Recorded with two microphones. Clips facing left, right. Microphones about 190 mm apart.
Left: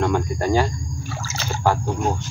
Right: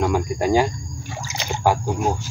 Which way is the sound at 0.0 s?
10° right (ahead or behind).